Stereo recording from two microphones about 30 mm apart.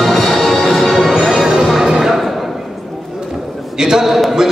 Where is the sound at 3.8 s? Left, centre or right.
Right.